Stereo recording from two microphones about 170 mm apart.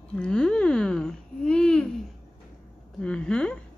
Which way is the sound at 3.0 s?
5° left (ahead or behind).